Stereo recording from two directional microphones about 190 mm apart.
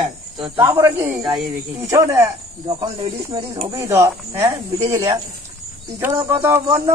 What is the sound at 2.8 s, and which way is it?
Speech, 30° right (ahead or behind).